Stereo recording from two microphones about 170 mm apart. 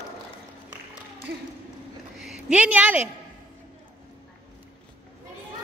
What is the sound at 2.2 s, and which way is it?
Speech, 5° right (ahead or behind).